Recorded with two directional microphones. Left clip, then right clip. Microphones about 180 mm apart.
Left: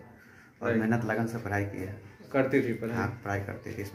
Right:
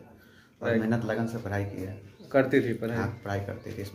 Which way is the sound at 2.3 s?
35° right (ahead or behind).